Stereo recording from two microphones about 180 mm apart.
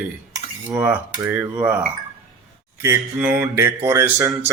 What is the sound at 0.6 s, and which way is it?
Speech, 10° right (ahead or behind).